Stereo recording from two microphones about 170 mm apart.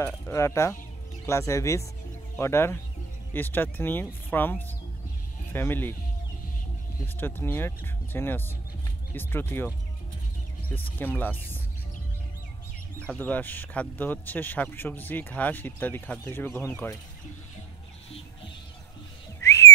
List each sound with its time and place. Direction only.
0.0 s a man's voice: 15° left (ahead or behind)
7.2 s a man's voice: 10° left (ahead or behind)
10.7 s a man's voice: 10° left (ahead or behind)
13.0 s a man's voice: 10° left (ahead or behind)
19.4 s whistling: 15° left (ahead or behind)